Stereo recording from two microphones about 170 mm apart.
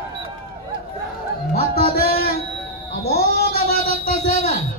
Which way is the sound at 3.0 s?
65° left (ahead or behind).